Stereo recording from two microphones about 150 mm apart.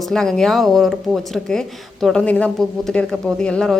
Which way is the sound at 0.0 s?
5° left (ahead or behind).